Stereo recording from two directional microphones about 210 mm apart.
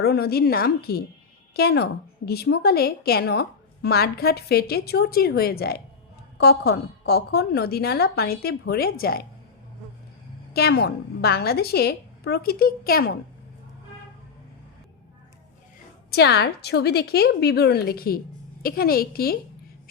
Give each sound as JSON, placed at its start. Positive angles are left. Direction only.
{"t": 0.0, "sound": "a woman's voice", "side_deg": 50}
{"t": 10.5, "sound": "a woman's voice", "side_deg": 50}
{"t": 16.1, "sound": "a woman's voice", "side_deg": 50}